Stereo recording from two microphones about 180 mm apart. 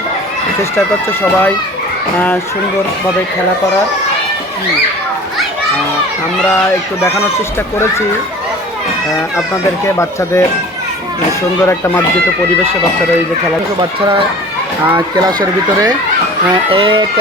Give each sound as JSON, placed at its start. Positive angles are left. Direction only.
{"t": 9.8, "sound": "speech", "side_deg": 15}
{"t": 11.6, "sound": "speech", "side_deg": 15}
{"t": 15.1, "sound": "speech", "side_deg": -20}
{"t": 16.6, "sound": "speech", "side_deg": -30}